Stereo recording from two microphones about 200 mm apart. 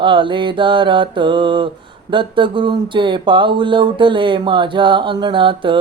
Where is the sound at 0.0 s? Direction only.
25° right (ahead or behind).